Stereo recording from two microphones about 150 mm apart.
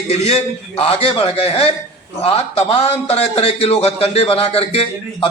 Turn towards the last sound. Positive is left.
turn(degrees=40)  # may be behind; listen again after turning